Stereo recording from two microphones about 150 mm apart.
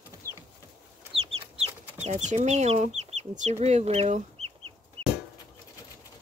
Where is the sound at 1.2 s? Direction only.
40° right (ahead or behind).